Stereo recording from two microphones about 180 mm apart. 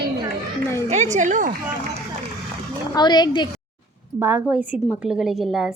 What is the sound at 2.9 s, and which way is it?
Speech, 25° left (ahead or behind).